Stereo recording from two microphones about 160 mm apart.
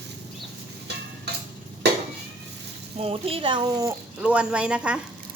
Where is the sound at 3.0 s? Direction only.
35° right (ahead or behind).